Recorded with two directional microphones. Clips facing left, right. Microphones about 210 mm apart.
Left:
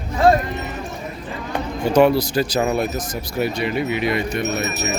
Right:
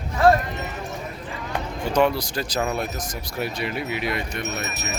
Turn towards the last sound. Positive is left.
turn(degrees=5)  # may be behind; listen again after turning